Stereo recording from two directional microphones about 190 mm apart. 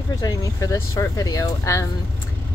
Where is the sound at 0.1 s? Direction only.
20° left (ahead or behind).